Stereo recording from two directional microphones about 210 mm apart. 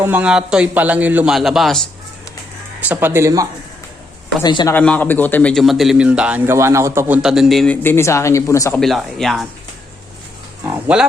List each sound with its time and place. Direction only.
0.0 s a man's voice: 5° right (ahead or behind)
2.8 s speech: 10° right (ahead or behind)
4.4 s a man's voice: 20° left (ahead or behind)
4.7 s a man's voice: 5° left (ahead or behind)
8.8 s a man's voice: centre (ahead or behind)
10.7 s speech: 5° right (ahead or behind)